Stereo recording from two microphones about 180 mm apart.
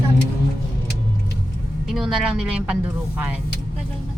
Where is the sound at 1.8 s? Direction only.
5° right (ahead or behind).